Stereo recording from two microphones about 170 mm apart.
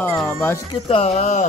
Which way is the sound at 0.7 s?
35° left (ahead or behind).